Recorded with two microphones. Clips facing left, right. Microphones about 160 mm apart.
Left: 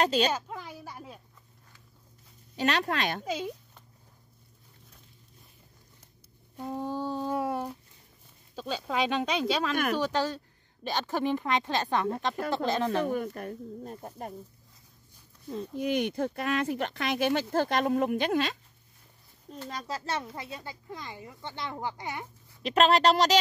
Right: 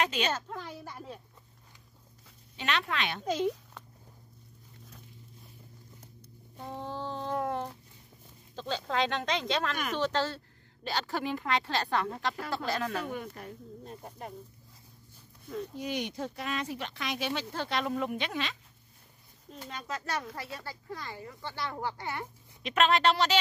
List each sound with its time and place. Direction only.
0.0 s speech: 35° left (ahead or behind)
0.3 s a woman's voice: 10° left (ahead or behind)
2.5 s speech: 40° left (ahead or behind)
3.3 s speech: 5° left (ahead or behind)
6.5 s a sound: 5° left (ahead or behind)
8.5 s speech: 10° left (ahead or behind)
13.0 s speech: 45° left (ahead or behind)
15.7 s speech: 55° left (ahead or behind)
19.7 s speech: 35° left (ahead or behind); by 22.2 s 20° left (ahead or behind)
22.6 s speech: 35° left (ahead or behind)